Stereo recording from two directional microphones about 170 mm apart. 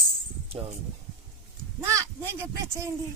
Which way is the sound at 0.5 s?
35° right (ahead or behind).